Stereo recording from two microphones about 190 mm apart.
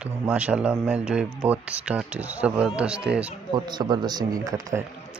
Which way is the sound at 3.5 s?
20° right (ahead or behind).